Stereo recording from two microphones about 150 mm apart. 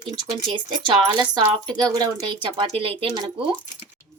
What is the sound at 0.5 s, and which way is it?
Speech, 30° right (ahead or behind).